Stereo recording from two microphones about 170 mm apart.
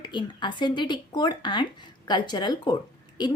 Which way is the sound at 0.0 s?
25° left (ahead or behind).